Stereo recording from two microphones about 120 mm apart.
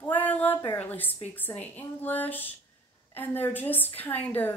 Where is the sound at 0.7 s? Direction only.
15° left (ahead or behind).